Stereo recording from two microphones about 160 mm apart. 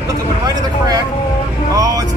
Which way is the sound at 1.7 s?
20° right (ahead or behind).